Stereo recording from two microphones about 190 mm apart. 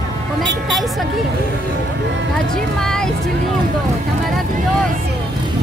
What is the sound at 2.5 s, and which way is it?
Speech, 5° left (ahead or behind).